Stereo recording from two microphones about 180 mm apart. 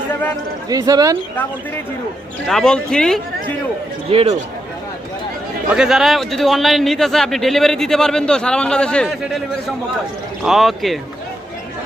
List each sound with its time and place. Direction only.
0.7 s speech: 20° right (ahead or behind)
2.5 s a man's voice: 5° left (ahead or behind)
4.1 s speech: 30° right (ahead or behind)
5.6 s a man's voice: 5° right (ahead or behind)
10.4 s a man's voice: centre (ahead or behind)